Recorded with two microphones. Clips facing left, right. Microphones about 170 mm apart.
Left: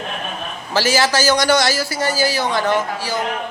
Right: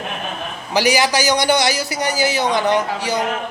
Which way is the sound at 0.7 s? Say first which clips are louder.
Right 1 dB; 15° right (ahead or behind).